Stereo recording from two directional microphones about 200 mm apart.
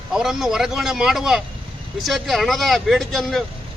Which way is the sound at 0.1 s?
Centre (ahead or behind).